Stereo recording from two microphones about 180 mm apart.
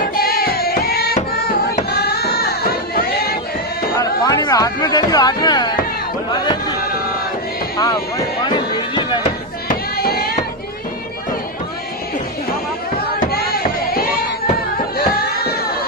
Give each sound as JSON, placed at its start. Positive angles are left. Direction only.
{"t": 0.1, "sound": "music", "side_deg": 55}
{"t": 3.9, "sound": "speech", "side_deg": 20}
{"t": 7.7, "sound": "speech", "side_deg": 20}
{"t": 8.5, "sound": "music", "side_deg": 25}
{"t": 9.7, "sound": "a sound", "side_deg": 60}
{"t": 13.2, "sound": "a sound", "side_deg": 60}
{"t": 15.0, "sound": "music", "side_deg": 60}